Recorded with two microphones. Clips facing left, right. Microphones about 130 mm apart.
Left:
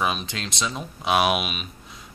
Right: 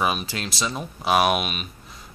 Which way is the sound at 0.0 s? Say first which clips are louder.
Right 2 dB; 5° right (ahead or behind).